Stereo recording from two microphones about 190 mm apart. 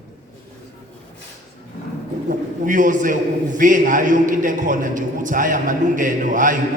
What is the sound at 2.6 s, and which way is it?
Speech, 45° right (ahead or behind).